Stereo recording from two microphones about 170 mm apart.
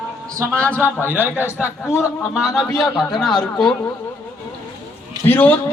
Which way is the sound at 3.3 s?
5° left (ahead or behind).